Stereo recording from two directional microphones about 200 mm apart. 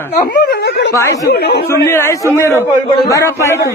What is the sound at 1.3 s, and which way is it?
Speech, 55° left (ahead or behind).